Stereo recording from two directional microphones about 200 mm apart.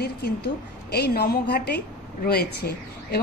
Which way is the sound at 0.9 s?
50° left (ahead or behind).